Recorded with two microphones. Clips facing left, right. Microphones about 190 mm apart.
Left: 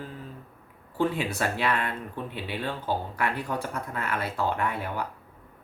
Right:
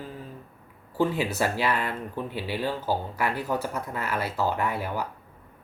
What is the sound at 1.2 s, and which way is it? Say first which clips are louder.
Speech: right 2 dB; 5° right (ahead or behind).